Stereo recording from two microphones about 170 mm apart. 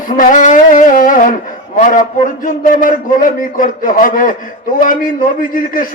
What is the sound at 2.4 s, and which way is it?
A man's voice, 55° left (ahead or behind).